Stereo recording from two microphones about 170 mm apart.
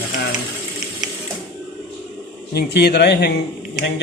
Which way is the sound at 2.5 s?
75° left (ahead or behind).